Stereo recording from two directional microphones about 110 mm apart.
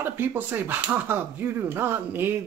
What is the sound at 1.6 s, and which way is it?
Speech, 20° right (ahead or behind).